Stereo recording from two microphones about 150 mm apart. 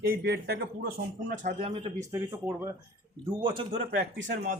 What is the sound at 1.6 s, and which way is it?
Speech, 40° right (ahead or behind).